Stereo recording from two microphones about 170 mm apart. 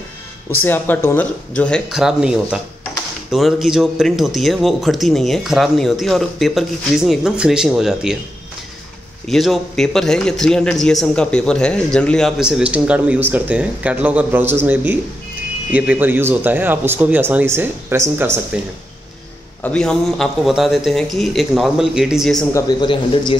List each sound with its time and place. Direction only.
0.5 s speech: 10° left (ahead or behind)
9.3 s a man's voice: centre (ahead or behind); by 18.4 s 15° right (ahead or behind)
19.6 s speech: 5° left (ahead or behind)
22.5 s speech: 25° left (ahead or behind)